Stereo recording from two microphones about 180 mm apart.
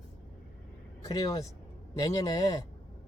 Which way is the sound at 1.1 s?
20° left (ahead or behind).